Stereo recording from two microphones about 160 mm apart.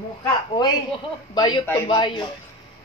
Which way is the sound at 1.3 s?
25° left (ahead or behind).